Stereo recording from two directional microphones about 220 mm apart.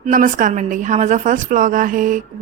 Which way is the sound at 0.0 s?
35° right (ahead or behind).